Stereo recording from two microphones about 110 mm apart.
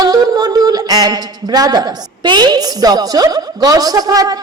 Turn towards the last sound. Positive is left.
turn(degrees=-35)  # may be behind; listen again after turning